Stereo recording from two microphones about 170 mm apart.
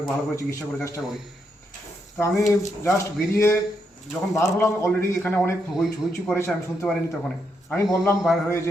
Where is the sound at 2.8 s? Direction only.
15° left (ahead or behind).